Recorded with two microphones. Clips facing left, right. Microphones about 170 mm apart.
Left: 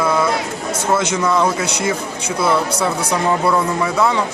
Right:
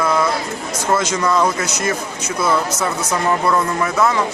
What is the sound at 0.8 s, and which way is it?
Speech, 10° left (ahead or behind).